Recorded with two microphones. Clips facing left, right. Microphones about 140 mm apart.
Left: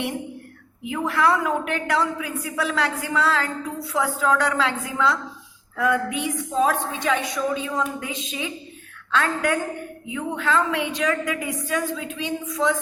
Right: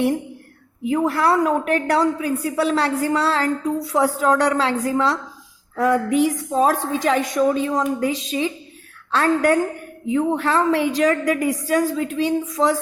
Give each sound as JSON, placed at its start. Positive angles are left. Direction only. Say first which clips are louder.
{"t": 0.9, "sound": "a woman's voice", "louder": "right 3 dB", "side_deg": -35}